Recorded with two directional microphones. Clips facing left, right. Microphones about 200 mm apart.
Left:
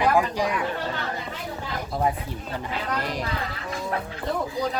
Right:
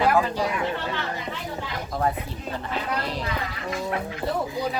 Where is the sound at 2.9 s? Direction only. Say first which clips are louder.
Even; 15° left (ahead or behind).